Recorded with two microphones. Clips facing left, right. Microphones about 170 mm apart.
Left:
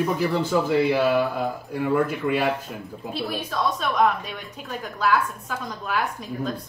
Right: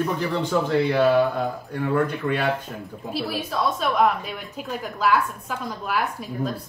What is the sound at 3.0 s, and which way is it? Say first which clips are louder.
A woman's voice: right 1 dB; 5° right (ahead or behind).